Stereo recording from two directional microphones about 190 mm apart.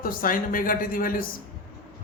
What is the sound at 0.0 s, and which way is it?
A man's voice, 45° left (ahead or behind).